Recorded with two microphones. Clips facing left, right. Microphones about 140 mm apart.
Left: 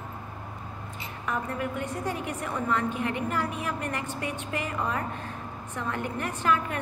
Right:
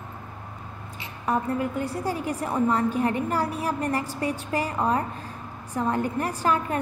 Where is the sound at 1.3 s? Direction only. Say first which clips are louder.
Right 6 dB; 35° right (ahead or behind).